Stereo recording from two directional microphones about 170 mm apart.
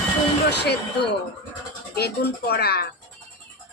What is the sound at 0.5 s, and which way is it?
Speech, 75° left (ahead or behind).